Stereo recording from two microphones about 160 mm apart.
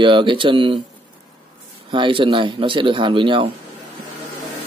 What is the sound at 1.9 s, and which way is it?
Speech, 30° right (ahead or behind).